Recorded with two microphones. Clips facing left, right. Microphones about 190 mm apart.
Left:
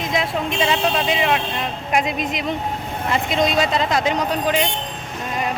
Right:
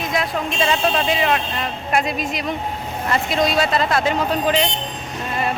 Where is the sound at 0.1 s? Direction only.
20° left (ahead or behind).